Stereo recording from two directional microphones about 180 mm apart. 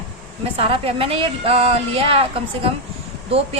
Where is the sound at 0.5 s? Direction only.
30° right (ahead or behind).